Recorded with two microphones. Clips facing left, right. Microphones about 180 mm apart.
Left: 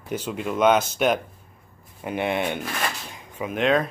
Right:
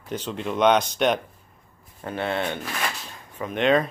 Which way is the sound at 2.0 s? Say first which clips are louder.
Left 2 dB; 15° left (ahead or behind).